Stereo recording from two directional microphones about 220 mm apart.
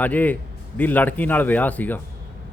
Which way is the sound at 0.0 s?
5° left (ahead or behind).